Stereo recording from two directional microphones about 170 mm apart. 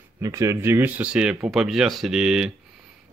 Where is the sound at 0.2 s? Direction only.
15° right (ahead or behind).